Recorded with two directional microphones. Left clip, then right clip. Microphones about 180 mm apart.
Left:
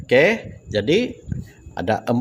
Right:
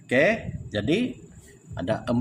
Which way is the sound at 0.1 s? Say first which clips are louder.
Left 6 dB; 45° left (ahead or behind).